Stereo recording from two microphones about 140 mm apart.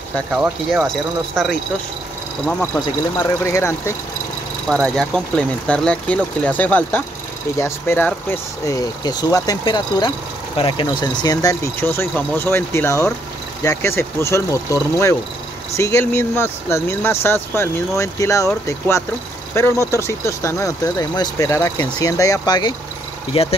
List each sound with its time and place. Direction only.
0.8 s speech: centre (ahead or behind); by 3.9 s 20° left (ahead or behind)
4.6 s speech: centre (ahead or behind); by 11.5 s 30° left (ahead or behind)
11.8 s speech: 15° left (ahead or behind)
23.3 s speech: 45° left (ahead or behind)